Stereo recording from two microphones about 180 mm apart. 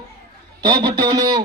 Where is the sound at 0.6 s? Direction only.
25° right (ahead or behind).